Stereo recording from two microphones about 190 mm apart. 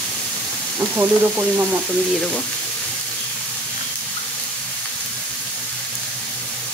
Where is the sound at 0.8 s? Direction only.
10° right (ahead or behind).